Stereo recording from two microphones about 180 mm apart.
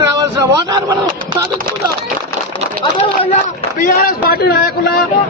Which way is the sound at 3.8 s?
55° left (ahead or behind).